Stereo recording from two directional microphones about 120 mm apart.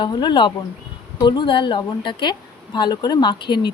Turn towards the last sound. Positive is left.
turn(degrees=40)  # may be behind; listen again after turning